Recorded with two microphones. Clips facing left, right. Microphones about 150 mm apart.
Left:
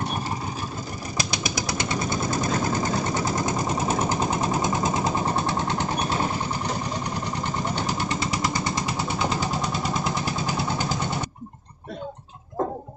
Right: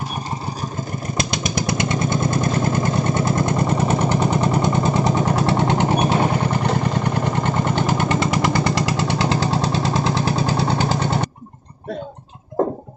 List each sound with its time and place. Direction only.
1.1 s vehicle: 55° right (ahead or behind); by 11.2 s 80° right